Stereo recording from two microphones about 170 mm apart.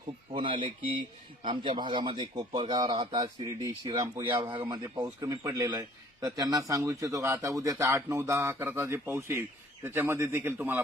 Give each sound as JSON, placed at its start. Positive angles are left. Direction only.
{"t": 0.3, "sound": "a man's voice", "side_deg": -30}